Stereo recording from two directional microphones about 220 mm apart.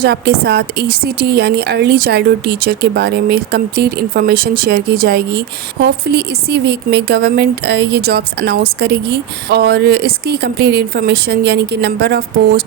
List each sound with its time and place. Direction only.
0.0 s speech: 45° right (ahead or behind)